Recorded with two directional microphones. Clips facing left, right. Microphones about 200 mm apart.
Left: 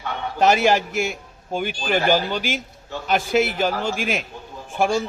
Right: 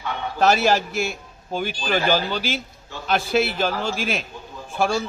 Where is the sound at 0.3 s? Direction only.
15° left (ahead or behind).